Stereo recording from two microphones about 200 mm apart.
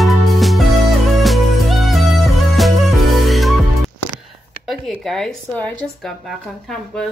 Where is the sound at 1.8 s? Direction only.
Centre (ahead or behind).